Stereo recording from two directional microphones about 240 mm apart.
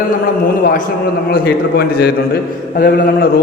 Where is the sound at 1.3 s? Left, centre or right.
Left.